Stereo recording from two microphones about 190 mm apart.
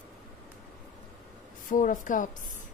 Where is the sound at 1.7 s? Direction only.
45° left (ahead or behind).